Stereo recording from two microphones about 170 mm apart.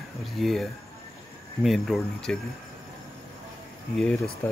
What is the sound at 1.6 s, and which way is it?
Speech, centre (ahead or behind).